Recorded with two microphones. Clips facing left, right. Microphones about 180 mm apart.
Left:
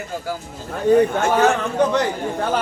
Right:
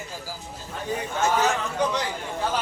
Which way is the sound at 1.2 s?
60° left (ahead or behind).